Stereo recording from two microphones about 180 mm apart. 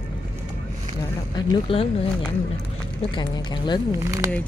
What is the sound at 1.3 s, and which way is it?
Speech, 30° left (ahead or behind).